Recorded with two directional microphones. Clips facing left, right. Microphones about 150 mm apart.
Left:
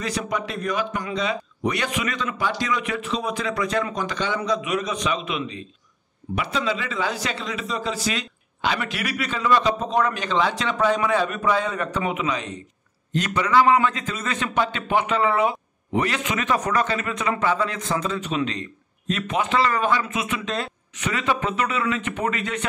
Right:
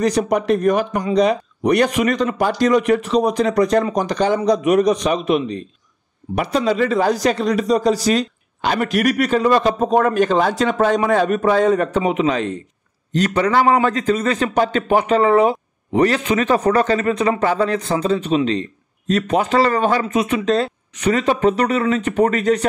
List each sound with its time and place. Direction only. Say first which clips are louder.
0.0 s a man's voice: right 10 dB; 40° right (ahead or behind)